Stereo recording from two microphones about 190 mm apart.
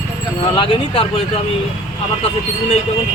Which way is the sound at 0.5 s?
25° left (ahead or behind).